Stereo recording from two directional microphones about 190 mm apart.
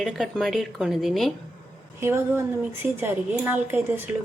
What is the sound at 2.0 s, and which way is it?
A woman's voice, 15° right (ahead or behind).